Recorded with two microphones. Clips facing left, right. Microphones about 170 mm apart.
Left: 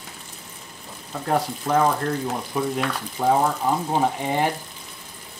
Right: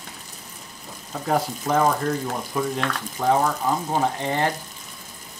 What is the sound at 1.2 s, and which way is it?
Speech, centre (ahead or behind).